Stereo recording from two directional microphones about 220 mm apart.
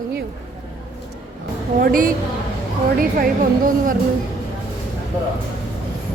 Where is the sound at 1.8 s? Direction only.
40° right (ahead or behind).